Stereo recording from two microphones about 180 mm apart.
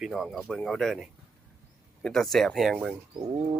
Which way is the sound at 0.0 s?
Centre (ahead or behind).